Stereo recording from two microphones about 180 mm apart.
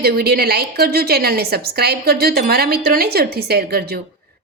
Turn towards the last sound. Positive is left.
turn(degrees=-60)  # may be behind; listen again after turning